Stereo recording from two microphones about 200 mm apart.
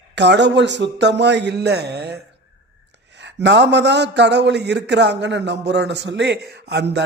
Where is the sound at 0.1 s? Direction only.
60° right (ahead or behind).